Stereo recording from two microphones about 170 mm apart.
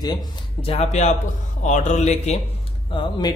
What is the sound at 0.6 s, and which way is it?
A man's voice, 35° left (ahead or behind).